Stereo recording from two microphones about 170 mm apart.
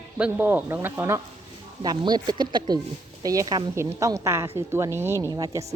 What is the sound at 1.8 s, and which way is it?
A woman's voice, 25° right (ahead or behind).